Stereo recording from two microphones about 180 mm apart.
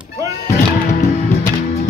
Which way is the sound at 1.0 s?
40° left (ahead or behind).